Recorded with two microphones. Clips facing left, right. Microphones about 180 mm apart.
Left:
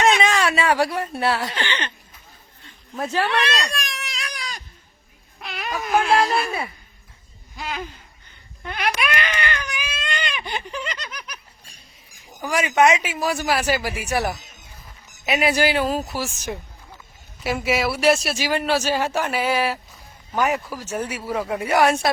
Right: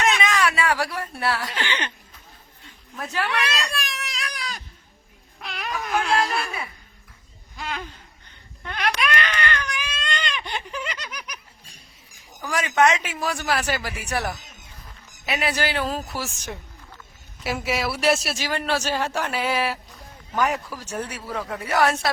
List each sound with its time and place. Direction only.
0.0 s speech: 30° left (ahead or behind)
1.5 s speech: 10° right (ahead or behind)
2.9 s speech: 30° left (ahead or behind)
3.7 s baby cry: centre (ahead or behind)
6.1 s a sound: 35° left (ahead or behind)
7.5 s a man's voice: 5° left (ahead or behind)
8.6 s baby cry: 10° left (ahead or behind); by 11.3 s 10° right (ahead or behind)
12.4 s speech: 10° left (ahead or behind)
17.4 s a man's voice: centre (ahead or behind)